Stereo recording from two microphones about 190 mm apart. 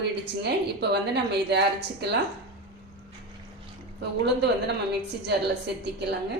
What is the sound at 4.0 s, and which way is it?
Speech, 60° right (ahead or behind).